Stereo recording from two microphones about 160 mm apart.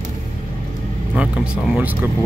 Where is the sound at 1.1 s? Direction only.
5° right (ahead or behind).